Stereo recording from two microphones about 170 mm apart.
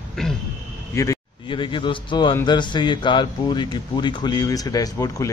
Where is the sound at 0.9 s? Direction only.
25° left (ahead or behind).